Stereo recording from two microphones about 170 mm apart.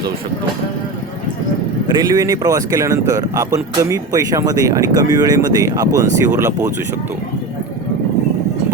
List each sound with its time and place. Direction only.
2.0 s speech: 20° right (ahead or behind)